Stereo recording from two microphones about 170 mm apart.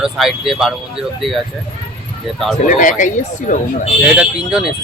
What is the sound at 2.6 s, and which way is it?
Speech, 50° left (ahead or behind).